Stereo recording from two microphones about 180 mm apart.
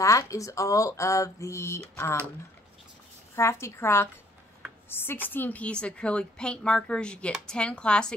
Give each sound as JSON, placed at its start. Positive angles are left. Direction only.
{"t": 0.0, "sound": "speech", "side_deg": 20}
{"t": 3.3, "sound": "a woman's voice", "side_deg": 15}